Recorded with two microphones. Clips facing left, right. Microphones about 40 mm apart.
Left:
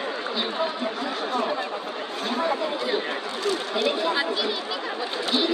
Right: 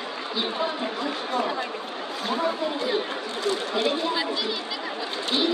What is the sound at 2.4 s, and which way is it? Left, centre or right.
Speech, left.